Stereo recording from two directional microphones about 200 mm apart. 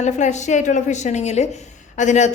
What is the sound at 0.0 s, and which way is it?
A man's voice, 35° left (ahead or behind).